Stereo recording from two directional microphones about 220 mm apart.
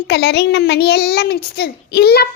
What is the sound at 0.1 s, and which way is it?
A child's voice, 50° left (ahead or behind).